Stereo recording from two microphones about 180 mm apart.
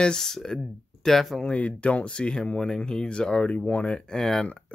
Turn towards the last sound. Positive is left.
turn(degrees=5)  # may be behind; listen again after turning